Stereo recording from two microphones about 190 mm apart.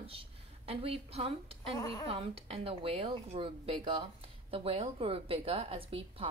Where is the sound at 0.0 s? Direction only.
30° right (ahead or behind).